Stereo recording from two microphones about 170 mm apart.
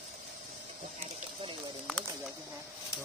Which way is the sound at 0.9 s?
35° right (ahead or behind).